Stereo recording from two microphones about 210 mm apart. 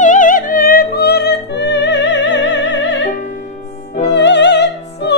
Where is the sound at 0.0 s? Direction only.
40° left (ahead or behind); by 3.1 s 60° left (ahead or behind).